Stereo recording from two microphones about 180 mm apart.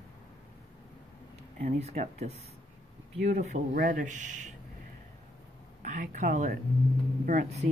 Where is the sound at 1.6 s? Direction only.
40° right (ahead or behind).